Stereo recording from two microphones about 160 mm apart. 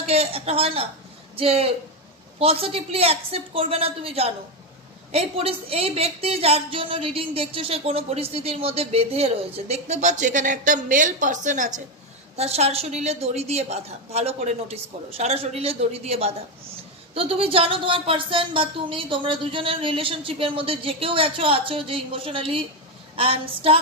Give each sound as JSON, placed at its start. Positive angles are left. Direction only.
{"t": 0.0, "sound": "speech", "side_deg": -40}
{"t": 12.4, "sound": "speech", "side_deg": -40}